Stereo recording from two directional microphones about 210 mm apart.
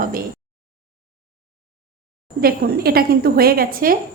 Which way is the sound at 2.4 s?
45° right (ahead or behind).